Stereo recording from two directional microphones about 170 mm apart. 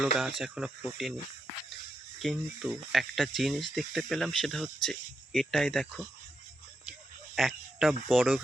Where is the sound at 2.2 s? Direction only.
Centre (ahead or behind).